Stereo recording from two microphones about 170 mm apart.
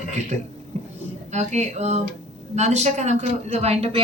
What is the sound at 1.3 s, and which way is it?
A woman's voice, 40° right (ahead or behind).